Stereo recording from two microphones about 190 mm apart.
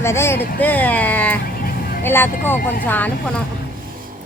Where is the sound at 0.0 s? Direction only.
15° left (ahead or behind).